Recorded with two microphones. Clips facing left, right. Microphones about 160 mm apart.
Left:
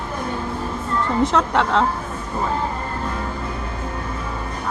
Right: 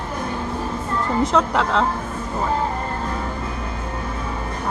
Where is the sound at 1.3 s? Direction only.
Centre (ahead or behind).